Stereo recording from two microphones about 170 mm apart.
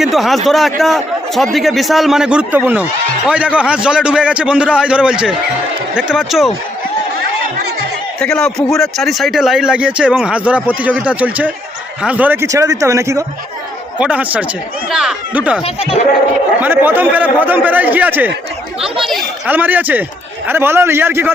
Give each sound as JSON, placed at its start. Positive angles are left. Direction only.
{"t": 0.0, "sound": "a man's voice", "side_deg": 0}
{"t": 8.2, "sound": "a man's voice", "side_deg": 5}
{"t": 14.0, "sound": "a man's voice", "side_deg": -5}
{"t": 15.6, "sound": "speech", "side_deg": 35}
{"t": 16.6, "sound": "a man's voice", "side_deg": -10}